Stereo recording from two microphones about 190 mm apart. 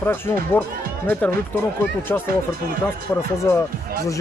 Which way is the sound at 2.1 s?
10° left (ahead or behind).